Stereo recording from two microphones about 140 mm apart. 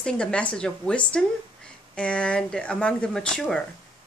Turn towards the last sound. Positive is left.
turn(degrees=5)  # may be behind; listen again after turning